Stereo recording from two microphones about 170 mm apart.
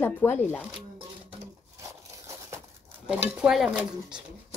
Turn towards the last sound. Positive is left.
turn(degrees=-5)  # may be behind; listen again after turning